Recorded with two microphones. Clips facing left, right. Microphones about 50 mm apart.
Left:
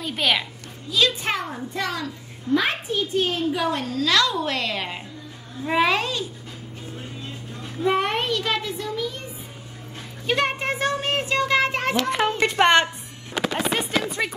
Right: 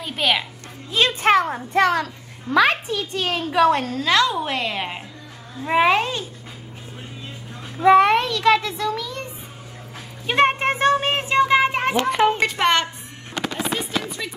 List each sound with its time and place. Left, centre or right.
0.0 s a woman's voice: centre
1.2 s a child's voice: right
2.5 s a child's voice: right
3.9 s a woman's voice: right
7.9 s a child's voice: right
10.3 s a child's voice: right; by 12.1 s centre
12.5 s a sound: centre
14.2 s speech: left